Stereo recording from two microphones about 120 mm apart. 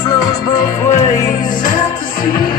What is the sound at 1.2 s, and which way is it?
Music, 90° left.